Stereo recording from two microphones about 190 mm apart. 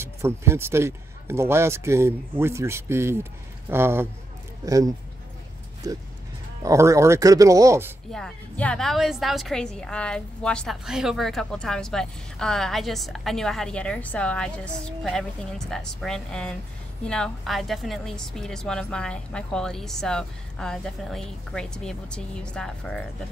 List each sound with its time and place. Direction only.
0.0 s a man's voice: 15° right (ahead or behind)
8.1 s a woman's voice: 5° left (ahead or behind)